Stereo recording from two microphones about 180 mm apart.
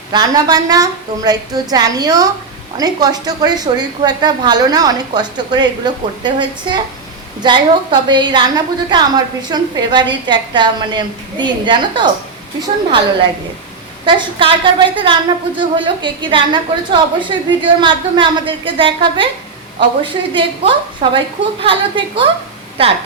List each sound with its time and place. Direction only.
0.1 s a woman's voice: 20° right (ahead or behind)
14.0 s a woman's voice: 25° right (ahead or behind)